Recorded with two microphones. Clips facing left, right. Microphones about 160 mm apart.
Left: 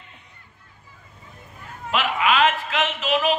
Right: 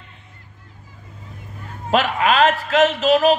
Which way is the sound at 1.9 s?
40° right (ahead or behind).